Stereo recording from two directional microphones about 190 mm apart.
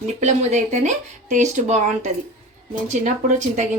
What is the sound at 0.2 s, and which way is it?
Speech, 40° right (ahead or behind).